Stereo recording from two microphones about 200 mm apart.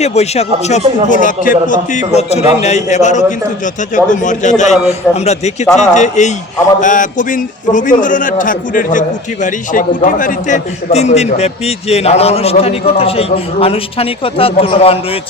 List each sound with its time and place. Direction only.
0.0 s a man's voice: 35° left (ahead or behind)